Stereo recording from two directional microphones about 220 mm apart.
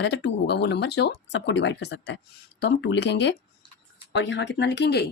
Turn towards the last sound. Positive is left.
turn(degrees=50)  # may be behind; listen again after turning